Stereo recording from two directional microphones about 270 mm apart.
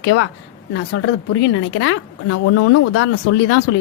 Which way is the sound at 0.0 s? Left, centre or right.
Left.